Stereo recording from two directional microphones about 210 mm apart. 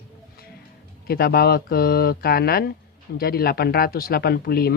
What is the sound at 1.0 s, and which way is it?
Speech, 50° left (ahead or behind).